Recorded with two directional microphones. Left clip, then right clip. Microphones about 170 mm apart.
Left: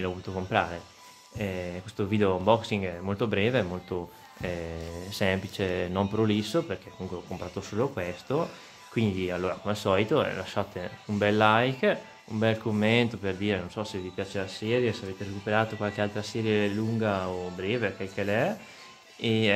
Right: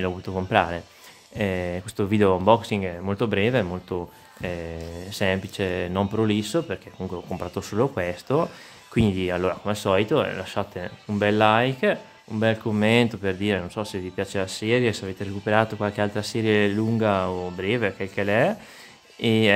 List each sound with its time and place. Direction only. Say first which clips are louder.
0.0 s speech: right 5 dB; 25° right (ahead or behind)
7.2 s speech: right 6 dB; 35° right (ahead or behind)
9.7 s speech: right 2 dB; 20° right (ahead or behind); by 15.5 s 50° right (ahead or behind)
15.5 s speech: right 5 dB; 35° right (ahead or behind)